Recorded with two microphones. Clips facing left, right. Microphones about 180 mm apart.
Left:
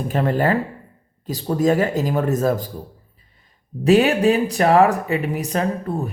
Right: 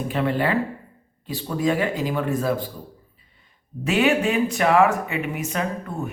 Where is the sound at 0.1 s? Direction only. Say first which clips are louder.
Left 3 dB; 45° left (ahead or behind).